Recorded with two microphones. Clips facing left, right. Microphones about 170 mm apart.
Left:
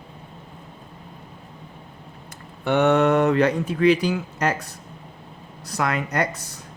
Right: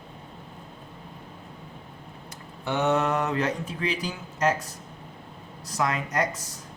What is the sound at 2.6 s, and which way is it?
Speech, 65° left (ahead or behind).